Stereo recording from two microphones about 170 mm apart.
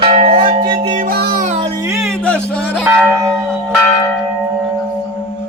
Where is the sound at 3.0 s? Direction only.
5° left (ahead or behind).